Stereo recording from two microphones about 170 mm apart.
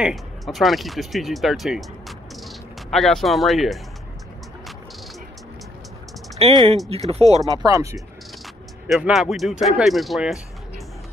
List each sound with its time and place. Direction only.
0.0 s speech: centre (ahead or behind)
6.4 s speech: 35° right (ahead or behind)
7.4 s speech: 20° right (ahead or behind)
8.8 s speech: centre (ahead or behind)